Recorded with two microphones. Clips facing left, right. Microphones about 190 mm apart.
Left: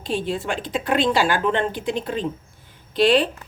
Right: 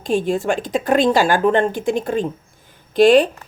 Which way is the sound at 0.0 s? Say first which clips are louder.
Right 6 dB; 45° right (ahead or behind).